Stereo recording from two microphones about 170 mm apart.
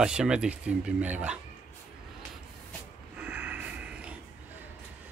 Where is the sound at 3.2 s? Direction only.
10° right (ahead or behind).